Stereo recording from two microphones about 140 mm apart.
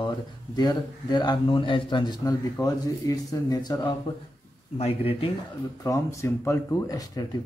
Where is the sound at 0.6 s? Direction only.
30° left (ahead or behind).